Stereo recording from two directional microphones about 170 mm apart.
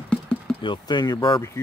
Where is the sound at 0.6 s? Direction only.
25° left (ahead or behind).